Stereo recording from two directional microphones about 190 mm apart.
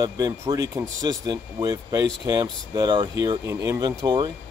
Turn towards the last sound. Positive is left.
turn(degrees=-20)  # may be behind; listen again after turning